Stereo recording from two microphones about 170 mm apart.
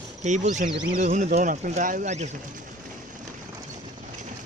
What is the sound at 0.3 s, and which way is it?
Speech, 45° right (ahead or behind).